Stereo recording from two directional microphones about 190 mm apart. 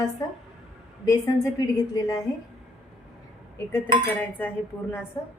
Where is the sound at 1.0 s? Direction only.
20° left (ahead or behind).